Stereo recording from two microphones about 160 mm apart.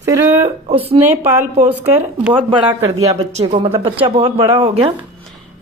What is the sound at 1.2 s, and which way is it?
Speech, 15° right (ahead or behind).